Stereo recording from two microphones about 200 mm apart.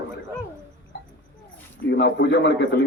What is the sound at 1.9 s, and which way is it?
Speech, 60° left (ahead or behind).